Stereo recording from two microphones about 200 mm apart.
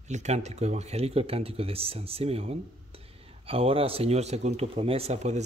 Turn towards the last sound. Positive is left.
turn(degrees=-35)  # may be behind; listen again after turning